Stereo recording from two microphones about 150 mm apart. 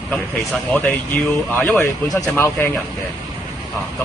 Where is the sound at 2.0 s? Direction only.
25° left (ahead or behind).